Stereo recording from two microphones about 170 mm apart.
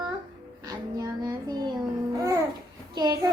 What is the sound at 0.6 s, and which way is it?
Child singing, 20° right (ahead or behind).